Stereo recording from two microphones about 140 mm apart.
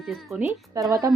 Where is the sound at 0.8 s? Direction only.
25° right (ahead or behind).